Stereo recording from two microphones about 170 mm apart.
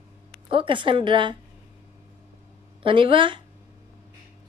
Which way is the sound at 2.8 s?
30° right (ahead or behind).